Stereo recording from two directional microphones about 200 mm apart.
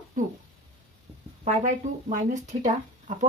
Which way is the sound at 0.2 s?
40° right (ahead or behind).